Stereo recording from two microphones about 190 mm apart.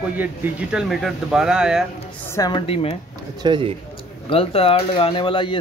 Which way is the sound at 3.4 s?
25° right (ahead or behind).